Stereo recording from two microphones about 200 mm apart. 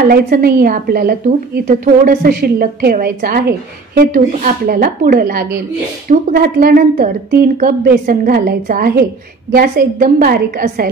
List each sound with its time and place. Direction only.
0.1 s a woman's voice: 50° right (ahead or behind)